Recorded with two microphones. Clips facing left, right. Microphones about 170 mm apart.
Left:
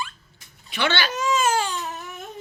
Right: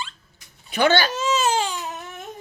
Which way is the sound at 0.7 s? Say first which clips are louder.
Right 6 dB; 40° right (ahead or behind).